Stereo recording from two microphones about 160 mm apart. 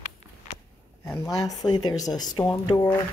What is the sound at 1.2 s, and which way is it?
Speech, 20° left (ahead or behind).